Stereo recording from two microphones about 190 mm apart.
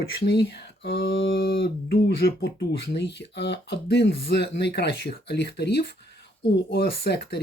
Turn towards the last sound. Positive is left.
turn(degrees=60)  # may be behind; listen again after turning